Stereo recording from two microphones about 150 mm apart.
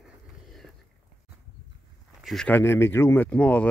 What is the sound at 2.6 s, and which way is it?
Speech, 15° left (ahead or behind).